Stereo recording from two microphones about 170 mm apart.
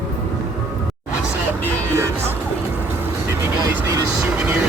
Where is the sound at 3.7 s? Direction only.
20° right (ahead or behind).